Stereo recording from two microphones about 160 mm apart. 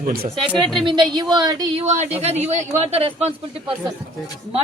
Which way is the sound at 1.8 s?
45° right (ahead or behind).